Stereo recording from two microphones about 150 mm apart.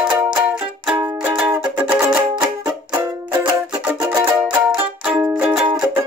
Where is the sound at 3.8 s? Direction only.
10° right (ahead or behind).